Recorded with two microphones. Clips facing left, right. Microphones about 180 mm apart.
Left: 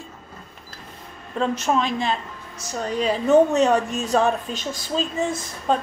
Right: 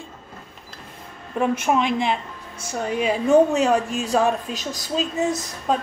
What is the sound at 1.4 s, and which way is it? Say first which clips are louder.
A woman's voice: right 1 dB; 10° right (ahead or behind).